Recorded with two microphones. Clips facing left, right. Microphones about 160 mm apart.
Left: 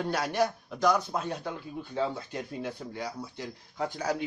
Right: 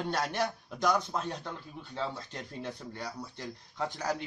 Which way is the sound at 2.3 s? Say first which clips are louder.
Left 4 dB; 10° left (ahead or behind).